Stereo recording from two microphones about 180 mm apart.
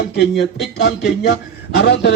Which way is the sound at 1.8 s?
70° left (ahead or behind).